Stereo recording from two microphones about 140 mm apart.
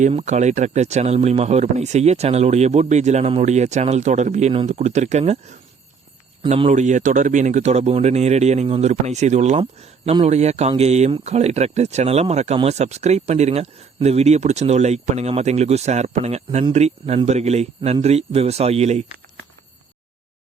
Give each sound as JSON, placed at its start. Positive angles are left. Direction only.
{"t": 0.1, "sound": "speech", "side_deg": -55}
{"t": 6.7, "sound": "speech", "side_deg": -60}
{"t": 9.6, "sound": "speech", "side_deg": -45}